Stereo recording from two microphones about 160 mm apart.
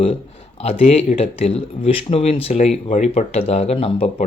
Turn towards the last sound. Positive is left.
turn(degrees=40)  # may be behind; listen again after turning